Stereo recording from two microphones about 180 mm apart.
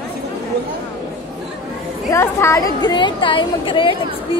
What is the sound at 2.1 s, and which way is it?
A woman's voice, 15° left (ahead or behind).